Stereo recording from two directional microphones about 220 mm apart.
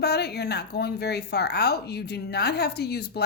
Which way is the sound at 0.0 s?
45° left (ahead or behind).